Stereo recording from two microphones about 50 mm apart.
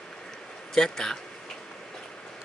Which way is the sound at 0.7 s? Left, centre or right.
Centre.